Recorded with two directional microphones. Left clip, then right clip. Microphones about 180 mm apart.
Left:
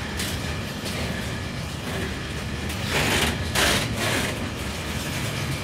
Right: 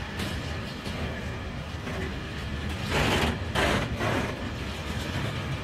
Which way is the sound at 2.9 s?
45° right (ahead or behind).